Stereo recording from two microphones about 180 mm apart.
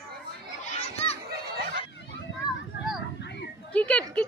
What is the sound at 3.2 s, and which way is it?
Children playing, 70° left (ahead or behind).